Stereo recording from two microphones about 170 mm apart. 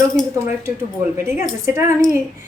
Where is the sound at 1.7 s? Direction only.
15° right (ahead or behind).